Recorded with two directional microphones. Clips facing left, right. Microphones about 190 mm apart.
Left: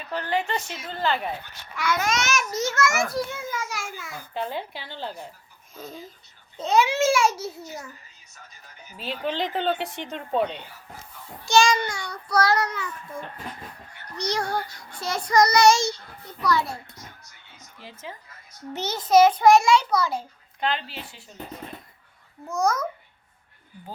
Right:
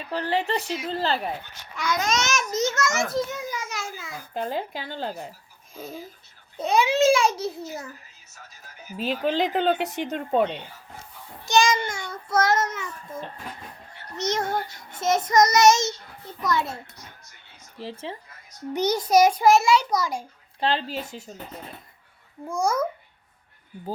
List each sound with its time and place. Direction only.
0.1 s a woman's voice: 35° right (ahead or behind)
1.4 s a child's voice: 15° right (ahead or behind)
4.4 s speech: 45° right (ahead or behind)
5.7 s a child's voice: 10° right (ahead or behind)
8.8 s speech: 10° right (ahead or behind)
9.2 s speech: 40° right (ahead or behind)
11.4 s child singing: 20° right (ahead or behind)
13.9 s a child's voice: 25° right (ahead or behind)
18.7 s a child's voice: 15° right (ahead or behind)
20.6 s a woman's voice: 30° right (ahead or behind)
22.4 s a child's voice: 10° right (ahead or behind)